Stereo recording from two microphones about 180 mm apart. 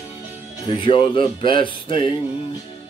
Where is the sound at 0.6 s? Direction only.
25° left (ahead or behind).